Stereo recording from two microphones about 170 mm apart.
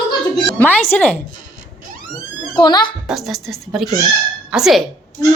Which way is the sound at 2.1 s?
25° left (ahead or behind).